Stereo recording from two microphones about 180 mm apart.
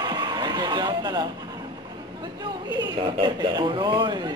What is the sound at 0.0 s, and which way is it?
Music, 25° right (ahead or behind).